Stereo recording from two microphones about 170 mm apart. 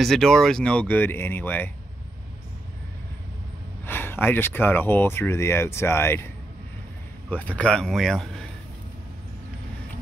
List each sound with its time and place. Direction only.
0.0 s speech: centre (ahead or behind)
3.8 s speech: 10° left (ahead or behind)
7.2 s speech: 10° left (ahead or behind)